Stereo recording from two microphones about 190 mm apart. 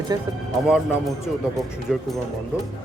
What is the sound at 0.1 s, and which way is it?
Speech, 20° right (ahead or behind).